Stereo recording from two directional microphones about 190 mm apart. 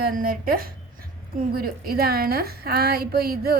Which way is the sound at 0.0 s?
50° right (ahead or behind).